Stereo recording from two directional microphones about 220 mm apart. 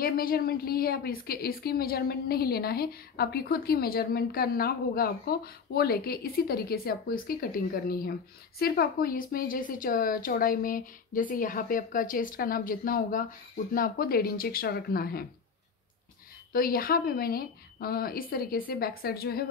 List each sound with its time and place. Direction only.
0.0 s a woman's voice: 40° left (ahead or behind)
16.5 s a woman's voice: 40° left (ahead or behind)